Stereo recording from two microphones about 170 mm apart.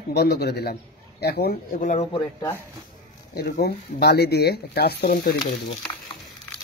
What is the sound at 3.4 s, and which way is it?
A man's voice, 65° left (ahead or behind).